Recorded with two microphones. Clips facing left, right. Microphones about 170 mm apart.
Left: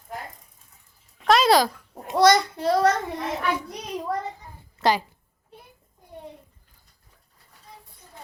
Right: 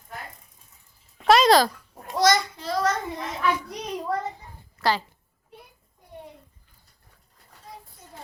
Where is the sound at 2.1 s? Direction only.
60° left (ahead or behind).